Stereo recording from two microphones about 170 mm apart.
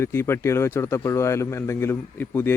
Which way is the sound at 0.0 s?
15° left (ahead or behind).